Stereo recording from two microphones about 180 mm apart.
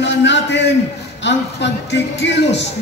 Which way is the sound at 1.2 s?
75° left (ahead or behind).